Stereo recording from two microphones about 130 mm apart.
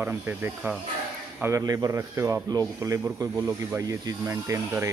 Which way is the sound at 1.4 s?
25° right (ahead or behind).